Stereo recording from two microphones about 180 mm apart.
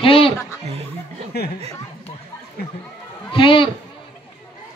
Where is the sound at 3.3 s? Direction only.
30° left (ahead or behind).